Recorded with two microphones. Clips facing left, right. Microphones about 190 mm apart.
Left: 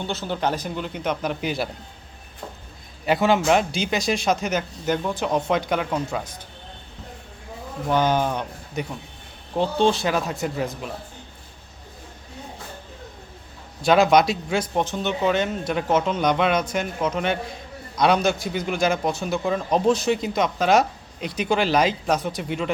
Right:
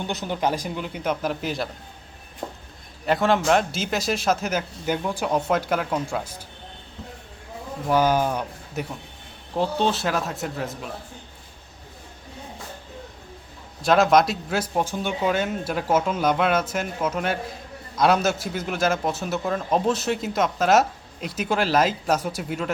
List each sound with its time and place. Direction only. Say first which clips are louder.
0.1 s speech: even; 15° right (ahead or behind)
2.4 s a sound: right 4 dB; 40° right (ahead or behind)
3.1 s speech: left 1 dB; centre (ahead or behind)
7.9 s speech: right 1 dB; 10° right (ahead or behind)
13.8 s speech: left 1 dB; centre (ahead or behind)